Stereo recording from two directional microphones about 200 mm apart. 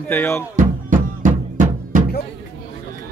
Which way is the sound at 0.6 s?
40° right (ahead or behind).